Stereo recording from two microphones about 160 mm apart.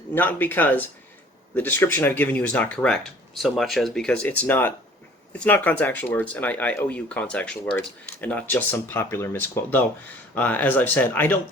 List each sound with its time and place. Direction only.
0.1 s speech: 10° left (ahead or behind)